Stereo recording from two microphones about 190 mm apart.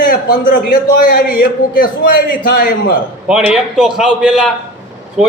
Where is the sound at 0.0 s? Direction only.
45° left (ahead or behind).